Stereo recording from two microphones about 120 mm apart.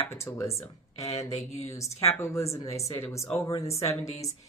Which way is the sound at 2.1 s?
25° left (ahead or behind).